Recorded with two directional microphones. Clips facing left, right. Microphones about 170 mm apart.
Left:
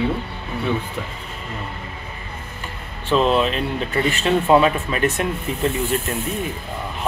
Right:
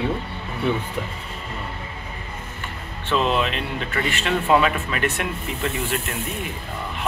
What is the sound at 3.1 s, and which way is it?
Speech, 30° left (ahead or behind).